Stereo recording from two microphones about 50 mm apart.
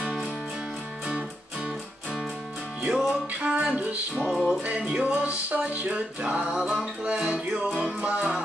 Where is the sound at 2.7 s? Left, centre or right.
Right.